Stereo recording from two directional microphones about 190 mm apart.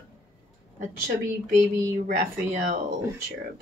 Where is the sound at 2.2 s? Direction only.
45° right (ahead or behind).